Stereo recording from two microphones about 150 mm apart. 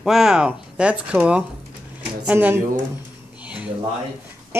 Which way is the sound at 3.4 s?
5° right (ahead or behind).